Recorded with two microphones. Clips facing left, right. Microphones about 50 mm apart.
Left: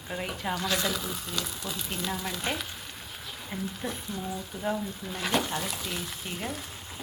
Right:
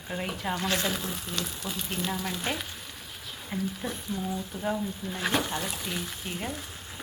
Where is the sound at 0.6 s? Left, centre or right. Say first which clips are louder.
Even; right.